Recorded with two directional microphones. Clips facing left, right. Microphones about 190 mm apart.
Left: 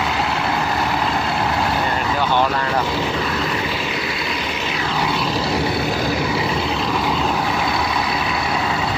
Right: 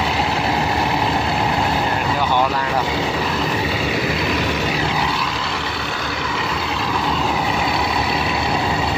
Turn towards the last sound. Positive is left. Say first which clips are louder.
# left 1 dB
turn(degrees=0)  # may be behind; listen again after turning